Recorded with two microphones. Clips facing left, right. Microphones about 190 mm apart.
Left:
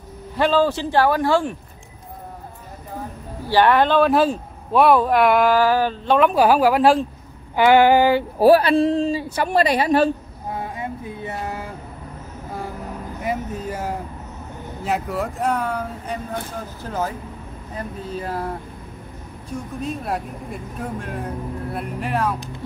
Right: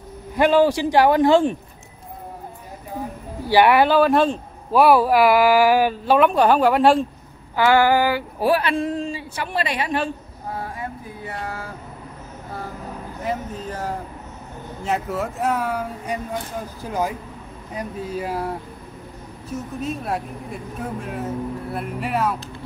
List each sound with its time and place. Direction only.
0.4 s speech: 15° right (ahead or behind)
3.4 s speech: 10° right (ahead or behind)
7.5 s female singing: 20° left (ahead or behind)
8.4 s a woman's voice: 35° left (ahead or behind)
10.6 s a sound: 20° left (ahead or behind)
13.2 s speech: 10° left (ahead or behind); by 18.5 s 10° right (ahead or behind)
19.5 s speech: centre (ahead or behind)